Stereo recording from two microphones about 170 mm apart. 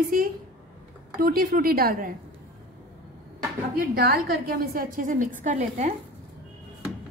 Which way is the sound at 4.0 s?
60° right (ahead or behind).